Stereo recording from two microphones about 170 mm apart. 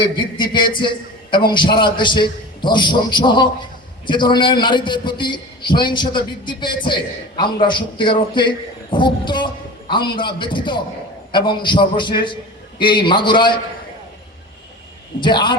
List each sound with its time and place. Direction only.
0.0 s a man's voice: 25° left (ahead or behind)
15.2 s a man's voice: 25° left (ahead or behind)